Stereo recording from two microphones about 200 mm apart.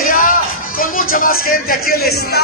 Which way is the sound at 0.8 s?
45° left (ahead or behind).